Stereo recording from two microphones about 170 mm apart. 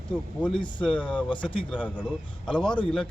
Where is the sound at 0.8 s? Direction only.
5° left (ahead or behind).